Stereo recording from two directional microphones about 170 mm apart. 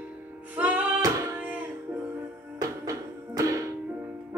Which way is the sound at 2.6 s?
20° right (ahead or behind).